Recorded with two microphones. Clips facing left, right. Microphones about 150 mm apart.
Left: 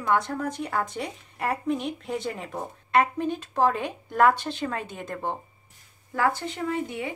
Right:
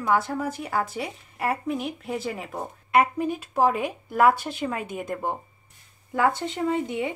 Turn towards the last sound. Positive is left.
turn(degrees=-20)  # may be behind; listen again after turning